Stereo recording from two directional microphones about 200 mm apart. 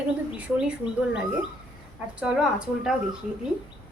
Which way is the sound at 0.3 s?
5° right (ahead or behind).